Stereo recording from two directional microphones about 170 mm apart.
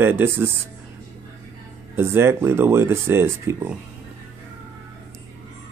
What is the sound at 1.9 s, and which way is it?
Speech, 15° right (ahead or behind).